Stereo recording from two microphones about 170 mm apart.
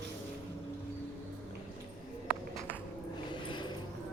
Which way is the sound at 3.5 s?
25° left (ahead or behind).